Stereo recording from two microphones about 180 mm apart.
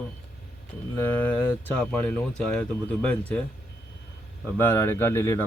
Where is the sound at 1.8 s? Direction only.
5° left (ahead or behind).